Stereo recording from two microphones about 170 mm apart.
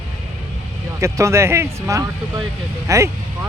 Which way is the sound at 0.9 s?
15° right (ahead or behind).